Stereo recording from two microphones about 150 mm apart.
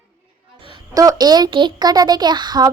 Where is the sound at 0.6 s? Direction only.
30° right (ahead or behind).